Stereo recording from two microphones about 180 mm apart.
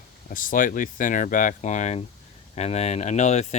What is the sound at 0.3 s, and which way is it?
Speech, 50° left (ahead or behind).